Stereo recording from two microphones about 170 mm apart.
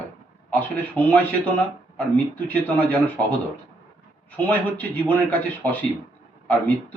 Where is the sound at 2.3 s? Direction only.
10° left (ahead or behind).